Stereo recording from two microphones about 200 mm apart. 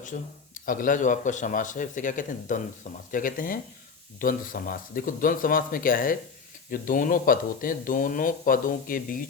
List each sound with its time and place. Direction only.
0.0 s speech: 40° left (ahead or behind)